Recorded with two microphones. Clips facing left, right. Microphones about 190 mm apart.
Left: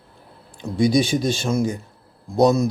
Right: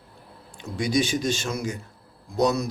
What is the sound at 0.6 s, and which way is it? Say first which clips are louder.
Speech: left 6 dB; 30° left (ahead or behind).